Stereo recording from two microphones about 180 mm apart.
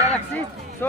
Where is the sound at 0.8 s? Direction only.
10° left (ahead or behind).